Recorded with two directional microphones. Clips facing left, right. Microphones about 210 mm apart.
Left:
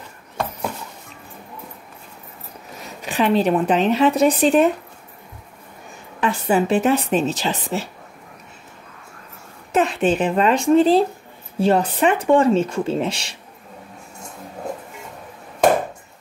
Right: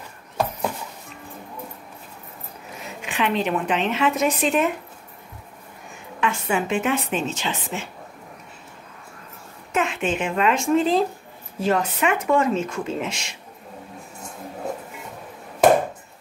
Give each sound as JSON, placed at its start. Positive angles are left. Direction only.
{"t": 3.0, "sound": "speech", "side_deg": 35}
{"t": 6.2, "sound": "speech", "side_deg": 35}
{"t": 9.7, "sound": "speech", "side_deg": 35}